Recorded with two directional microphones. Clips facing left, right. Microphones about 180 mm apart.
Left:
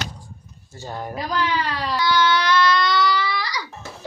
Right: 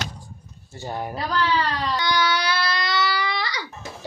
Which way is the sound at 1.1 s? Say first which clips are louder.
Even; 15° left (ahead or behind).